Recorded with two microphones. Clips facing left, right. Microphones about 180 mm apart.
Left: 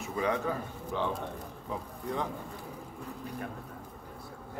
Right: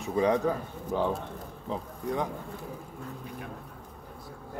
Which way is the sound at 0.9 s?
40° right (ahead or behind).